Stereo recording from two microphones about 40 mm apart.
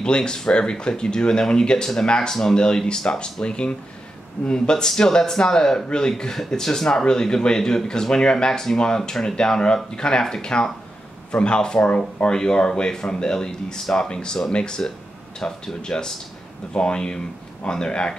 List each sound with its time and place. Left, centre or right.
0.0 s speech: left